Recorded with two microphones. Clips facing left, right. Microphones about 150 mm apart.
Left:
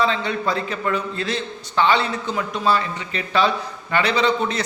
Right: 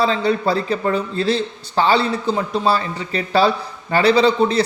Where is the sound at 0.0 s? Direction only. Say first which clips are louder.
Right 4 dB; 35° right (ahead or behind).